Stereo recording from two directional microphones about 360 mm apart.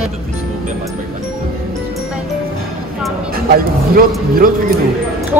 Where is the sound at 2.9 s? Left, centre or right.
Centre.